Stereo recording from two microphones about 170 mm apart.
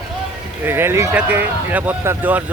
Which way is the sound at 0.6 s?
15° right (ahead or behind).